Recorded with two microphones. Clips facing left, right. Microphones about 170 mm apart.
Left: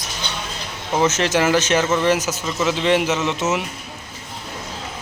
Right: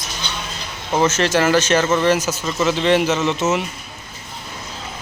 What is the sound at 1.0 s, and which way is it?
A man's voice, 15° left (ahead or behind).